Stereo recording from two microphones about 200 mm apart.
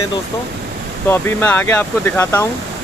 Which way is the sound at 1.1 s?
10° left (ahead or behind).